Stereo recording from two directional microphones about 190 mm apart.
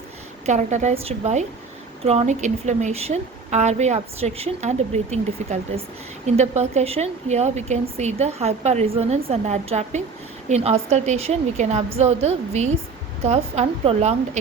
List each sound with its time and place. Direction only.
0.4 s a woman's voice: 40° right (ahead or behind)